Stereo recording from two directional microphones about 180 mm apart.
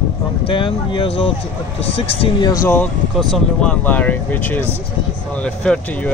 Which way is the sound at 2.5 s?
15° left (ahead or behind).